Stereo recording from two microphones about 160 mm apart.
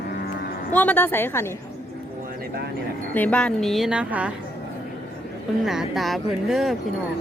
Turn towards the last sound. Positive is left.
turn(degrees=0)  # may be behind; listen again after turning